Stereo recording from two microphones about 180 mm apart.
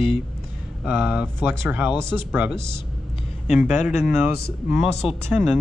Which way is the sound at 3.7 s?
40° left (ahead or behind).